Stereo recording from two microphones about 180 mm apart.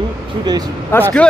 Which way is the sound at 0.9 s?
15° left (ahead or behind).